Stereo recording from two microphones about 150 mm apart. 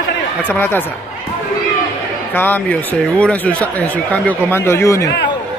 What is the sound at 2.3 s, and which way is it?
Speech, 10° left (ahead or behind).